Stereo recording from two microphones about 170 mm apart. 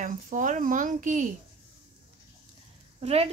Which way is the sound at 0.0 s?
50° right (ahead or behind).